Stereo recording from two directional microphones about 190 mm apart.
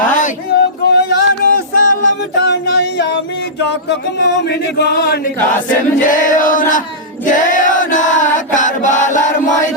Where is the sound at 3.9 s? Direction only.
65° left (ahead or behind).